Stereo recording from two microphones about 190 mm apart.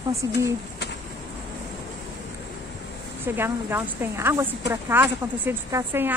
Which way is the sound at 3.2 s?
10° right (ahead or behind).